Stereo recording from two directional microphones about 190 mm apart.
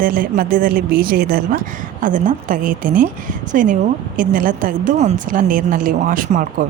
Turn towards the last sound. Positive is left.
turn(degrees=-45)  # may be behind; listen again after turning